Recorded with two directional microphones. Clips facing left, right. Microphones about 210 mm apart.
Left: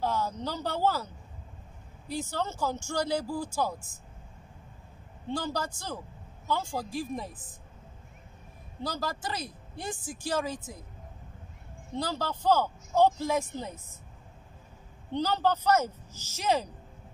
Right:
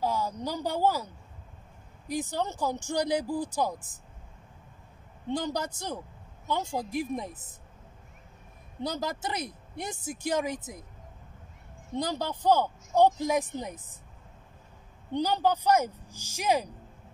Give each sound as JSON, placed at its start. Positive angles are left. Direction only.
{"t": 0.0, "sound": "speech", "side_deg": -10}
{"t": 5.3, "sound": "a woman's voice", "side_deg": -20}
{"t": 8.8, "sound": "a woman's voice", "side_deg": -20}
{"t": 11.9, "sound": "speech", "side_deg": -20}
{"t": 15.1, "sound": "speech", "side_deg": -15}